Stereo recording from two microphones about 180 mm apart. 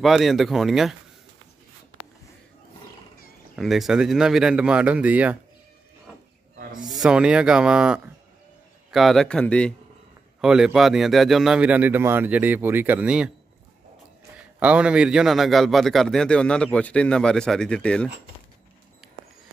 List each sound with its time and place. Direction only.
0.0 s speech: centre (ahead or behind)
3.5 s speech: centre (ahead or behind)
7.0 s a man's voice: 5° right (ahead or behind)
14.6 s speech: 5° right (ahead or behind)